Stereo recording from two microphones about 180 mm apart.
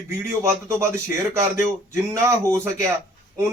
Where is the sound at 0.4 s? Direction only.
15° right (ahead or behind).